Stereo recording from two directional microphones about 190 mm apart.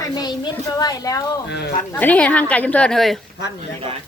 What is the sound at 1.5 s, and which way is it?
Speech, 60° left (ahead or behind).